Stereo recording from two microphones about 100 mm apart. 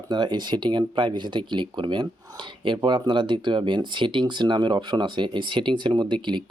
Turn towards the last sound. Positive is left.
turn(degrees=-50)  # may be behind; listen again after turning